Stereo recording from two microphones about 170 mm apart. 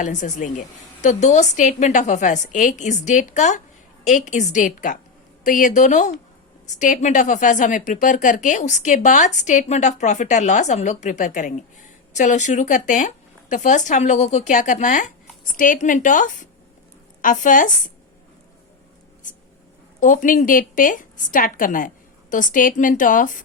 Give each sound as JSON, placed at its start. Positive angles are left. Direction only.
{"t": 0.0, "sound": "speech", "side_deg": 45}
{"t": 19.2, "sound": "a sound", "side_deg": 50}
{"t": 20.0, "sound": "speech", "side_deg": 50}